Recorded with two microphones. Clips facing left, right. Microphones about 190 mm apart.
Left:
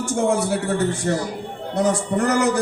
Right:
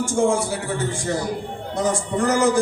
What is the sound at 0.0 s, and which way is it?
Speech, 65° left (ahead or behind).